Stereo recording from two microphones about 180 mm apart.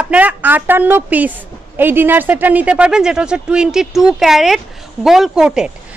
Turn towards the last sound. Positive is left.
turn(degrees=-5)  # may be behind; listen again after turning